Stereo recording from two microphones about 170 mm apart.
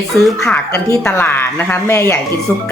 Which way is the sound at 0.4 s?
15° left (ahead or behind).